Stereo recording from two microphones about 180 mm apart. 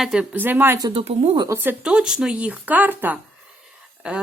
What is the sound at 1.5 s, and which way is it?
Speech, 10° right (ahead or behind).